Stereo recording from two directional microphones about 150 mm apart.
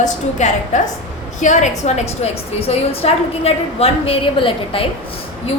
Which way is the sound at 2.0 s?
45° left (ahead or behind).